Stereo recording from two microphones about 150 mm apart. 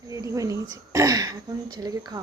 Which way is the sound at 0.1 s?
20° right (ahead or behind).